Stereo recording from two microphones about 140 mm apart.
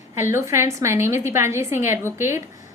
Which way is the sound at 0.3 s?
20° right (ahead or behind).